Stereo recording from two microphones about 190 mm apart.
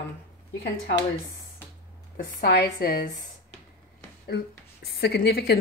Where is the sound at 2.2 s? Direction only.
50° left (ahead or behind).